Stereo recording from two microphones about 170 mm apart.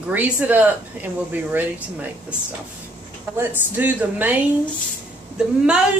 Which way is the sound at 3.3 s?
10° right (ahead or behind).